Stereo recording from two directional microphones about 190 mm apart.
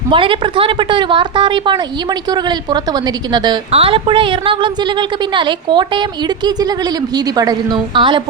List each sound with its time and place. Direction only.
0.1 s a woman's voice: 25° right (ahead or behind)